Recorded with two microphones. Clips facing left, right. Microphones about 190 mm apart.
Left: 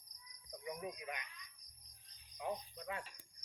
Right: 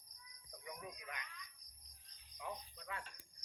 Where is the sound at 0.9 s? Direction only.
20° left (ahead or behind).